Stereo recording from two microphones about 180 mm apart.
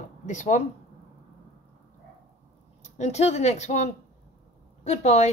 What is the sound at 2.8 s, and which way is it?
Speech, 40° left (ahead or behind).